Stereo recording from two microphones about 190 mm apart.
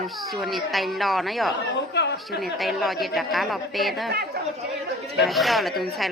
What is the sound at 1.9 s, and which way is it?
Speech, 65° left (ahead or behind).